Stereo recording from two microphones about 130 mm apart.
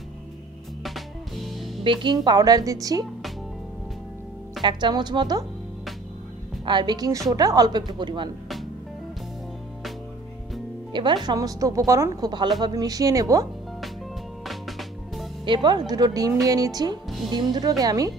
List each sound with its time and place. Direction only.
0.8 s music: centre (ahead or behind)
1.8 s speech: 40° right (ahead or behind)
4.6 s a woman's voice: 35° right (ahead or behind)
6.6 s a woman's voice: 35° right (ahead or behind)
10.9 s music: 35° right (ahead or behind)
11.2 s speech: 25° right (ahead or behind)
12.2 s a woman's voice: 35° right (ahead or behind)
14.4 s music: centre (ahead or behind)
15.4 s a woman's voice: 35° right (ahead or behind)